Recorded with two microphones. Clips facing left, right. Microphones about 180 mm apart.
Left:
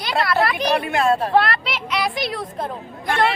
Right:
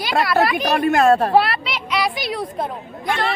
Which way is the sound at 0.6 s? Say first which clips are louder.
Right 5 dB; 45° right (ahead or behind).